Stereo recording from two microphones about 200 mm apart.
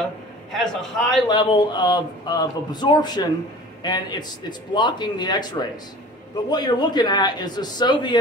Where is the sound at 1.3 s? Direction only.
20° left (ahead or behind).